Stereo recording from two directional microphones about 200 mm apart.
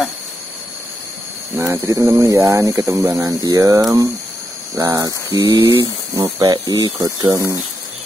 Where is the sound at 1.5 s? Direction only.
15° right (ahead or behind).